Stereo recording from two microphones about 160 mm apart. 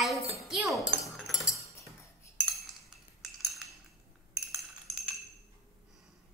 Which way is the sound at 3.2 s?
Centre (ahead or behind).